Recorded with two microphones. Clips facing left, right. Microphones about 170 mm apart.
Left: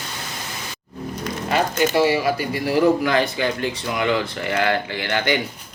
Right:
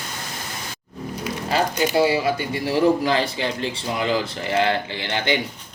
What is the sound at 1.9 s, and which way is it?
Speech, 25° right (ahead or behind).